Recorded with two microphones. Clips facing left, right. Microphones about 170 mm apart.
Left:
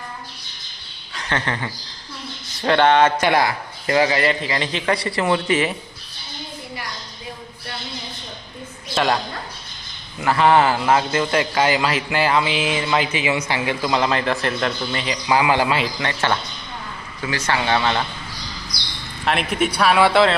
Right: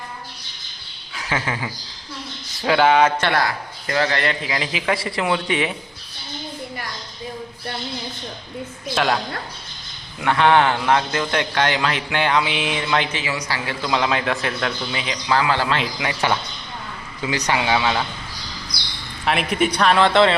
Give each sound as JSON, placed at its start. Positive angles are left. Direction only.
{"t": 1.1, "sound": "a man's voice", "side_deg": -5}
{"t": 3.2, "sound": "a man's voice", "side_deg": 15}
{"t": 9.0, "sound": "a man's voice", "side_deg": 0}
{"t": 13.1, "sound": "speech", "side_deg": 20}
{"t": 13.8, "sound": "a man's voice", "side_deg": 0}
{"t": 15.3, "sound": "a man's voice", "side_deg": 15}
{"t": 16.0, "sound": "speech", "side_deg": -10}
{"t": 19.2, "sound": "a man's voice", "side_deg": 0}